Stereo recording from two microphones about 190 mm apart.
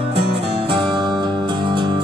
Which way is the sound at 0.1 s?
65° right (ahead or behind).